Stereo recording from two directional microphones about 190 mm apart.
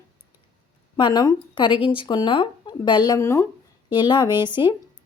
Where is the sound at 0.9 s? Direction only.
20° left (ahead or behind).